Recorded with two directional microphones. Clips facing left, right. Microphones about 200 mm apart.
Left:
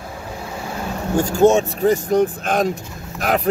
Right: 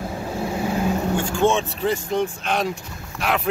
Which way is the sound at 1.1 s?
40° left (ahead or behind).